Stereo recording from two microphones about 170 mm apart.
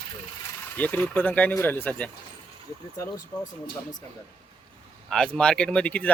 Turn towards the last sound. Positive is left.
turn(degrees=10)  # may be behind; listen again after turning